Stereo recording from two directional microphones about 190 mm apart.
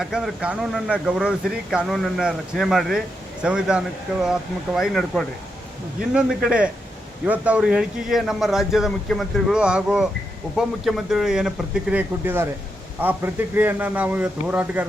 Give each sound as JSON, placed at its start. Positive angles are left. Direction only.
{"t": 0.0, "sound": "a man's voice", "side_deg": 0}